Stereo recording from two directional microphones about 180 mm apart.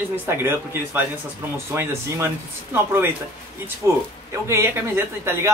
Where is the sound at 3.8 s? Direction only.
15° right (ahead or behind).